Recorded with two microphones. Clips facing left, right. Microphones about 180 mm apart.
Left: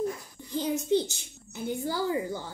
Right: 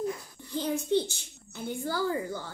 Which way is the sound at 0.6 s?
15° left (ahead or behind).